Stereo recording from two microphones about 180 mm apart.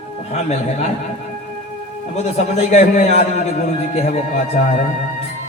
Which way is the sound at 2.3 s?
40° left (ahead or behind).